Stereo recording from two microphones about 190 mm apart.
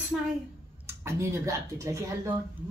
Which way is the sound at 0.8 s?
15° right (ahead or behind).